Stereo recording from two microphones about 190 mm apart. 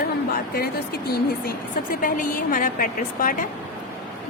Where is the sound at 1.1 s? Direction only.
50° left (ahead or behind).